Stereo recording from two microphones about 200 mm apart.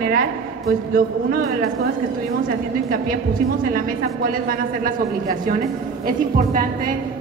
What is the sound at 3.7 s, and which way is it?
A woman's voice, 45° right (ahead or behind).